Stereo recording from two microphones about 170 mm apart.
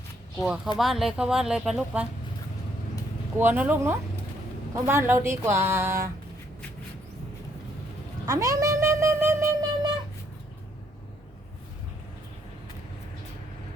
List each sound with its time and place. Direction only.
0.4 s speech: 5° right (ahead or behind)
3.3 s a woman's voice: 10° right (ahead or behind)
8.3 s a sound: 20° right (ahead or behind)